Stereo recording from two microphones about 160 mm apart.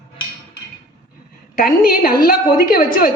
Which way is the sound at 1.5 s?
65° left (ahead or behind).